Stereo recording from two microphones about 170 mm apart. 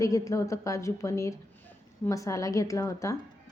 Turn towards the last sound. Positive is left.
turn(degrees=20)  # may be behind; listen again after turning